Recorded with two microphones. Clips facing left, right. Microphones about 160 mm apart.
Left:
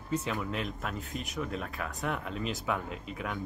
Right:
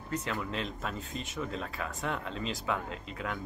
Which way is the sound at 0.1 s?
10° left (ahead or behind).